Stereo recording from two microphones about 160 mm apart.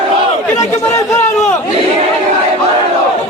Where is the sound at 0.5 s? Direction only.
20° left (ahead or behind).